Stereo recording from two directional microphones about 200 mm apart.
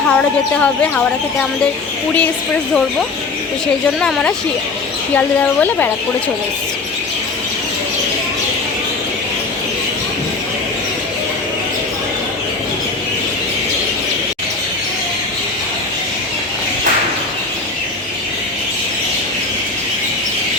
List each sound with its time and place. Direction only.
0.1 s speech: 5° left (ahead or behind)
4.0 s speech: 5° left (ahead or behind)